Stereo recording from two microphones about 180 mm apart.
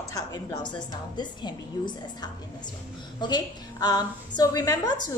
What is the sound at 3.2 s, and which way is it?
A woman's voice, 20° left (ahead or behind).